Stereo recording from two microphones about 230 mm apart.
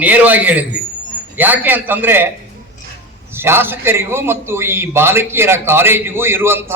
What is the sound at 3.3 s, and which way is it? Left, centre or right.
A man's voice, centre.